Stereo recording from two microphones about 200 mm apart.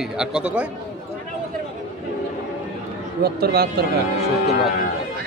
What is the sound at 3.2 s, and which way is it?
Speech, 50° right (ahead or behind).